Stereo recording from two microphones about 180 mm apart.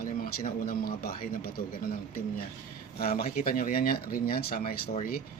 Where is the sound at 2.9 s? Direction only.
55° left (ahead or behind).